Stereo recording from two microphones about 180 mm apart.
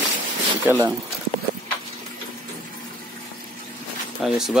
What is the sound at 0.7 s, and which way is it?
Speech, 10° right (ahead or behind).